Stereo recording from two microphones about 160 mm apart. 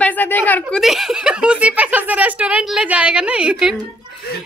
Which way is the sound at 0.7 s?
Centre (ahead or behind).